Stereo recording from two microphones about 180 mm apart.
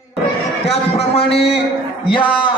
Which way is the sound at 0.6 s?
35° left (ahead or behind).